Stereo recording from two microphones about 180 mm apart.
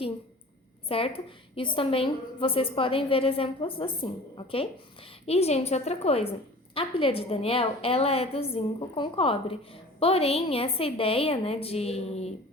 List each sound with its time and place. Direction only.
0.9 s a woman's voice: 30° left (ahead or behind)
5.2 s a woman's voice: 35° left (ahead or behind)